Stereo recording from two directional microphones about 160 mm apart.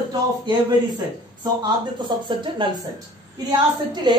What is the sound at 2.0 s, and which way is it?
Speech, 30° right (ahead or behind).